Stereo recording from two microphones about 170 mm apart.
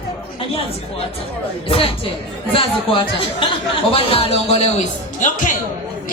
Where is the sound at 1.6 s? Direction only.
35° left (ahead or behind).